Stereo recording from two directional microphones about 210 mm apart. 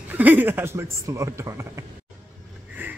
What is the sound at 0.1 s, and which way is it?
A man's voice, 10° right (ahead or behind).